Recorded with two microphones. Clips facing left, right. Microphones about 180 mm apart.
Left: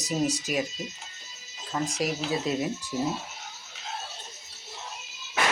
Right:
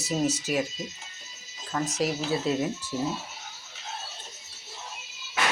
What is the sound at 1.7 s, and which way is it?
Speech, 10° left (ahead or behind).